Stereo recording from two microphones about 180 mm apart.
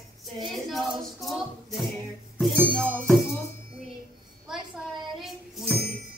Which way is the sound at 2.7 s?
Centre (ahead or behind).